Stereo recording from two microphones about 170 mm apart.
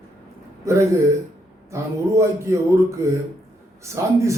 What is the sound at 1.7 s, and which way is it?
A man's voice, 15° right (ahead or behind).